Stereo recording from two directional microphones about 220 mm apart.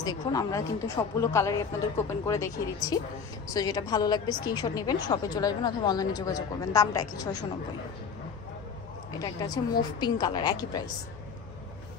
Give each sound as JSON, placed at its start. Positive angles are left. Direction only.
{"t": 0.0, "sound": "speech", "side_deg": 15}
{"t": 9.2, "sound": "speech", "side_deg": 15}